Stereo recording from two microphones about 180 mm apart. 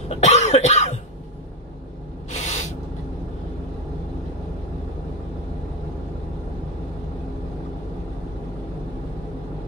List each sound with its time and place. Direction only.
0.1 s cough: 40° left (ahead or behind)
2.3 s spray: 40° left (ahead or behind)